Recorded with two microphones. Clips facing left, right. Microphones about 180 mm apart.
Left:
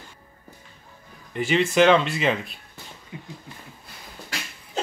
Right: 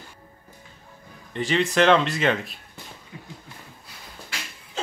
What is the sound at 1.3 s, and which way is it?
Speech, 5° left (ahead or behind).